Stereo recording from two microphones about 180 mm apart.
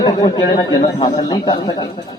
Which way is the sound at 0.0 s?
20° left (ahead or behind).